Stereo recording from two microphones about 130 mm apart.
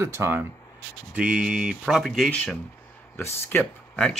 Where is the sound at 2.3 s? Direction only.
10° left (ahead or behind).